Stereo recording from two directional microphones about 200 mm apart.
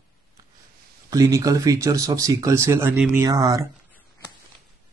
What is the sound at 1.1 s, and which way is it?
Speech, 15° right (ahead or behind).